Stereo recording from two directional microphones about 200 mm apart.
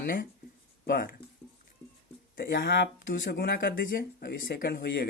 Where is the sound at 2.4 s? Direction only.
50° left (ahead or behind).